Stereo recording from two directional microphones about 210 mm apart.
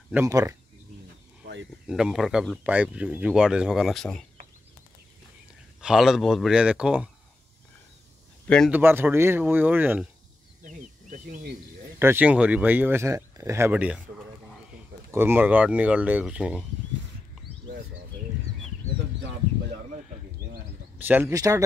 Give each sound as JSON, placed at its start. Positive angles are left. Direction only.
{"t": 0.1, "sound": "speech", "side_deg": -15}
{"t": 1.4, "sound": "a sound", "side_deg": -60}
{"t": 1.9, "sound": "speech", "side_deg": -5}
{"t": 5.8, "sound": "speech", "side_deg": 0}
{"t": 8.5, "sound": "speech", "side_deg": 5}
{"t": 8.7, "sound": "speech", "side_deg": -10}
{"t": 10.6, "sound": "snake", "side_deg": -35}
{"t": 12.0, "sound": "speech", "side_deg": -10}
{"t": 21.1, "sound": "speech", "side_deg": -15}